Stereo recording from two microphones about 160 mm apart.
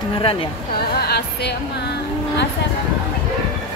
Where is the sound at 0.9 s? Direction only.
85° left.